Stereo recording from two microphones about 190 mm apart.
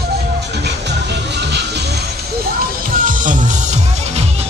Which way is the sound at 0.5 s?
65° right (ahead or behind).